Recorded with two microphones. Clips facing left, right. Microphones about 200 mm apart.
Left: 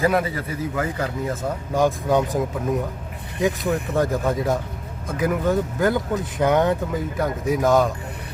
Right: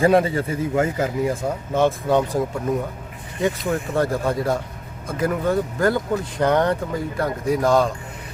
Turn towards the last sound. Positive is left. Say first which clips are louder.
# even
turn(degrees=0)  # may be behind; listen again after turning